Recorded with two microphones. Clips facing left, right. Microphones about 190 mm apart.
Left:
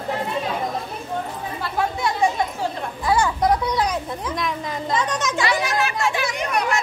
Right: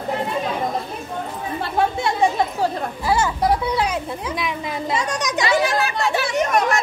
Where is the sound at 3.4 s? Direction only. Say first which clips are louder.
Even; 10° right (ahead or behind).